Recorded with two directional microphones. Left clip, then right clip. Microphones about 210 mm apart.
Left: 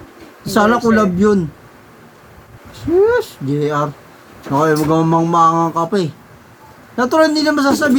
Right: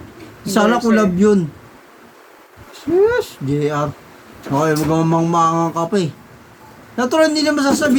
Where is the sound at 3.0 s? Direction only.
25° right (ahead or behind).